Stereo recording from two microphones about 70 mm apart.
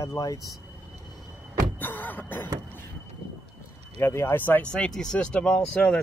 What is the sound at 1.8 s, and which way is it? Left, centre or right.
Speech, left.